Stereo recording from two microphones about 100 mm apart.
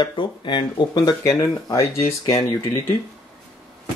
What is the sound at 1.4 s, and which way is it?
Speech, 35° left (ahead or behind).